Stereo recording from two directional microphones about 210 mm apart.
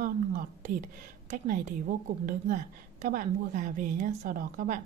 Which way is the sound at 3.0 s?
40° right (ahead or behind).